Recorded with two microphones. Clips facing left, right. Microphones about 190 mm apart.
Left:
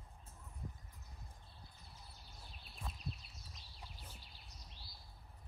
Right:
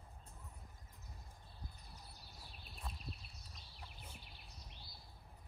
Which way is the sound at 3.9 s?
55° right (ahead or behind).